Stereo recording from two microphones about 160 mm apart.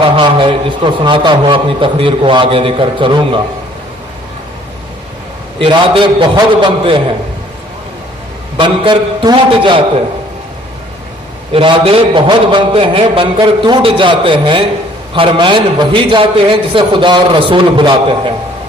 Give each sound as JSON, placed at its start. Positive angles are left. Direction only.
{"t": 0.2, "sound": "a man's voice", "side_deg": -30}
{"t": 5.5, "sound": "a man's voice", "side_deg": -35}
{"t": 8.5, "sound": "a man's voice", "side_deg": -30}
{"t": 11.5, "sound": "a man's voice", "side_deg": -35}